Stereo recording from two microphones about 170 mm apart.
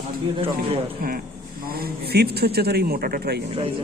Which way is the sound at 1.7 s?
65° right (ahead or behind).